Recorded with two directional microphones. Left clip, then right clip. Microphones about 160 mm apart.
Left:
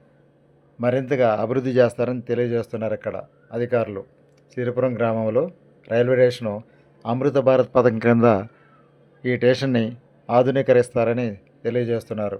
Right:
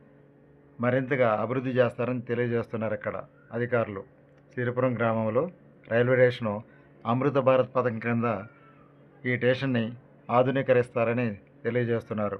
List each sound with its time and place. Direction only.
0.8 s a man's voice: 30° left (ahead or behind); by 8.4 s 60° left (ahead or behind)
9.2 s speech: 40° left (ahead or behind); by 12.4 s 20° left (ahead or behind)